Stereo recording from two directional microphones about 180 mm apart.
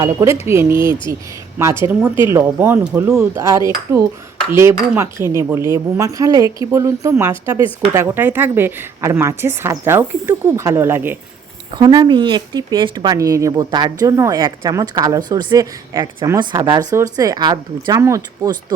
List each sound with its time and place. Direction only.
0.0 s a woman's voice: 20° right (ahead or behind)
11.8 s speech: 25° right (ahead or behind)